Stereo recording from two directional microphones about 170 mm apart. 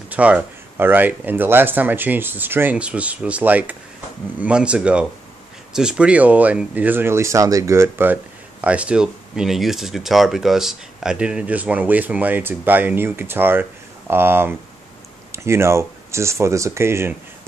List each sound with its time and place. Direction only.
0.1 s speech: 10° right (ahead or behind)